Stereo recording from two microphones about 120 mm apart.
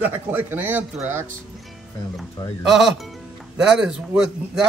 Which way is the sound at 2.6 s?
5° right (ahead or behind).